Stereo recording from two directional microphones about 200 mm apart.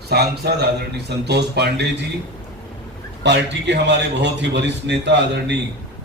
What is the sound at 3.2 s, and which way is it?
A man's voice, 60° right (ahead or behind).